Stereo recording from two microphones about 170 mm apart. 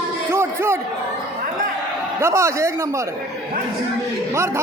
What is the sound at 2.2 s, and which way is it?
Speech, 15° right (ahead or behind).